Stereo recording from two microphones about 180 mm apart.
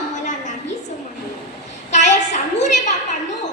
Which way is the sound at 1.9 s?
40° left (ahead or behind).